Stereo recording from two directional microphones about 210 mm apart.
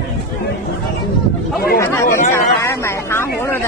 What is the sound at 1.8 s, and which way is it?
Speech, 15° left (ahead or behind).